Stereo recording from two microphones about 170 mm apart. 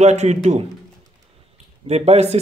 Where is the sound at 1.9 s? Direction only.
40° right (ahead or behind).